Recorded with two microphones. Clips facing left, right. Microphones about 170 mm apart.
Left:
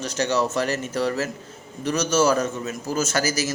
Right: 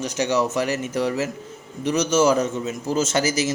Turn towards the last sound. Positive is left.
turn(degrees=-20)  # may be behind; listen again after turning